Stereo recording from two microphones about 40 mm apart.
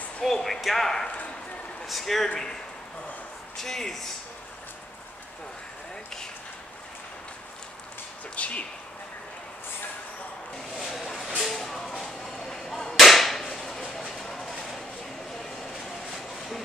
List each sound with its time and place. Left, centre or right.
0.2 s speech: centre
2.2 s speech: centre
3.6 s speech: centre
8.4 s speech: left
10.8 s a sound: centre
11.2 s music: centre
12.0 s artillery fire: centre
12.9 s whip: centre
14.1 s a sound: centre
15.8 s a sound: centre